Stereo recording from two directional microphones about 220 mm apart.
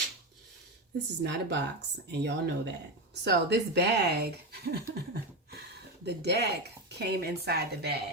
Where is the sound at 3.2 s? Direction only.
50° right (ahead or behind).